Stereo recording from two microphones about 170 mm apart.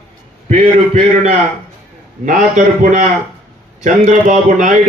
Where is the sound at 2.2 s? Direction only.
45° right (ahead or behind).